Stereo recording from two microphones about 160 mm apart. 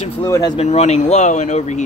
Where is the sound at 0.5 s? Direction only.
45° left (ahead or behind).